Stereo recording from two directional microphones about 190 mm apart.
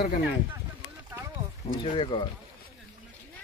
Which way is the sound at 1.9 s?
25° left (ahead or behind).